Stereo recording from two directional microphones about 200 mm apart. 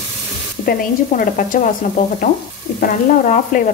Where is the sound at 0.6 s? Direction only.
45° left (ahead or behind).